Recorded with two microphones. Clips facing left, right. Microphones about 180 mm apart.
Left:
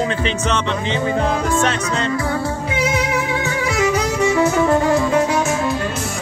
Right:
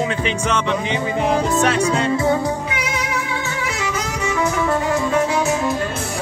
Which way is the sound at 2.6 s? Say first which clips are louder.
Left 5 dB; 30° left (ahead or behind).